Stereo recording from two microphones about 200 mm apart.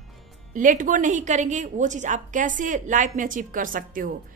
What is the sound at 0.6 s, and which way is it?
A woman's voice, 40° right (ahead or behind).